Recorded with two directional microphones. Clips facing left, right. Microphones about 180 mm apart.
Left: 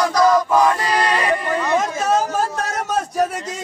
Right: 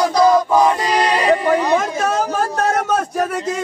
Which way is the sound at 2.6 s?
55° right (ahead or behind).